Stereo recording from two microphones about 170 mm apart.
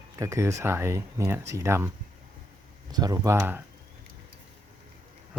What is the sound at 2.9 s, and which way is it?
Speech, 20° right (ahead or behind).